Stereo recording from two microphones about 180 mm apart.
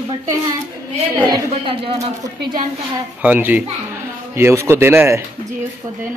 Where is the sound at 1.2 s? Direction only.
25° right (ahead or behind).